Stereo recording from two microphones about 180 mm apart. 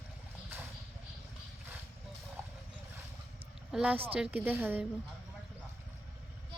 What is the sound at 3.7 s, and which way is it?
A woman's voice, 10° right (ahead or behind).